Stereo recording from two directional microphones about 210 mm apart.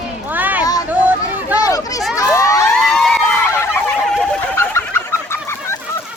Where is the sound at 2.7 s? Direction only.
Centre (ahead or behind).